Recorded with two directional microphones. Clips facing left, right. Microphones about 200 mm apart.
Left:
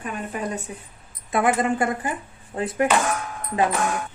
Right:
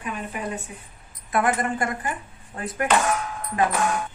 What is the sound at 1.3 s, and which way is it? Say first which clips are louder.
Speech: left 2 dB; 25° left (ahead or behind).